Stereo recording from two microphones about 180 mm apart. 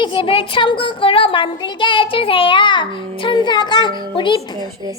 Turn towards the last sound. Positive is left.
turn(degrees=25)  # may be behind; listen again after turning